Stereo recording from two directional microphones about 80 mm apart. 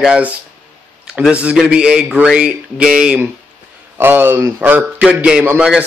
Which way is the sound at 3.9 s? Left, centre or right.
Right.